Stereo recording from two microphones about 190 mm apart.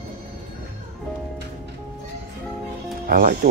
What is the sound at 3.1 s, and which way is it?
Music, 45° right (ahead or behind).